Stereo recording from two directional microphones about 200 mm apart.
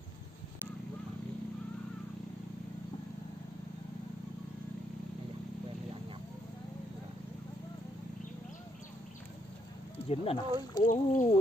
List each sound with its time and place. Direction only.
10.0 s speech: 30° left (ahead or behind)
10.9 s speech: 40° left (ahead or behind)